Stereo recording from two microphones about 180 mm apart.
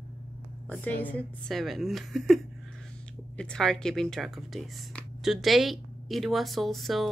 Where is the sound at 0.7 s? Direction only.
10° left (ahead or behind).